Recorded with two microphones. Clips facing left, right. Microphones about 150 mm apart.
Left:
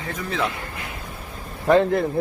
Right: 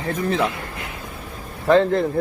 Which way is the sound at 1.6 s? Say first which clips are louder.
Right 1 dB; 15° left (ahead or behind).